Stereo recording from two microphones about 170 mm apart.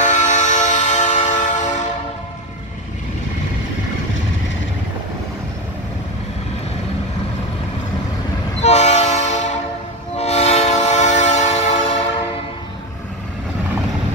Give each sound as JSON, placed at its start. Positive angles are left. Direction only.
{"t": 0.0, "sound": "train", "side_deg": 45}
{"t": 8.5, "sound": "train", "side_deg": 40}